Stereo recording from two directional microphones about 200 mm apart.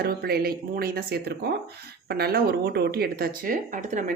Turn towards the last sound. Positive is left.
turn(degrees=-40)  # may be behind; listen again after turning